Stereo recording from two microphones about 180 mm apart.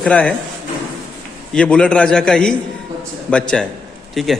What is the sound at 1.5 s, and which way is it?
A man's voice, 5° left (ahead or behind).